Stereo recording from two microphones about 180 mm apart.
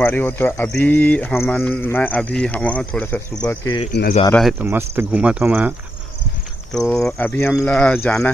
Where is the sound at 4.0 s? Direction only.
65° left (ahead or behind).